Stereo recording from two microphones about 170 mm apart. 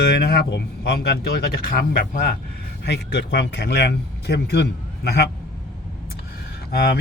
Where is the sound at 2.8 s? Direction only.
80° left.